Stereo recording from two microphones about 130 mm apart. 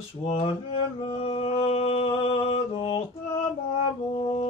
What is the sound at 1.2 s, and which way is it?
Music, 50° left (ahead or behind).